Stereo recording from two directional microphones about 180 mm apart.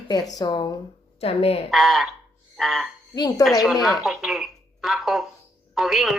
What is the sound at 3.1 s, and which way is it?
Speech, 20° left (ahead or behind).